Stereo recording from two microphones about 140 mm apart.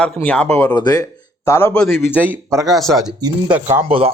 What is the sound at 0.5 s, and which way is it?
Speech, 25° left (ahead or behind).